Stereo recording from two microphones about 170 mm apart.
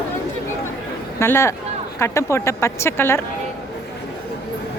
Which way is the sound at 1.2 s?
15° left (ahead or behind).